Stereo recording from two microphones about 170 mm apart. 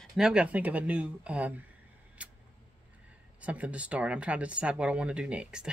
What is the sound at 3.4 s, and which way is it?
Speech, 10° right (ahead or behind).